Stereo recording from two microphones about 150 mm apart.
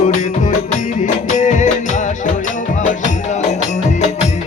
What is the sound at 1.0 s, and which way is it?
Music, 60° left (ahead or behind).